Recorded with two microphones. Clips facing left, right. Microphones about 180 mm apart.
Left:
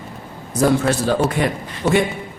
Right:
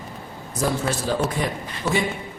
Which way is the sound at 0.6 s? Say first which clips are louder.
Left 8 dB; 70° left (ahead or behind).